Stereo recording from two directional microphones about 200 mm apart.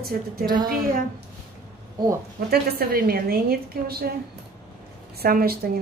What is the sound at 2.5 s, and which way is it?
A woman's voice, 50° right (ahead or behind).